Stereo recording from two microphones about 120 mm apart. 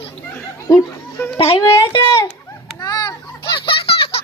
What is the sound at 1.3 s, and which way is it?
Speech, 50° left (ahead or behind).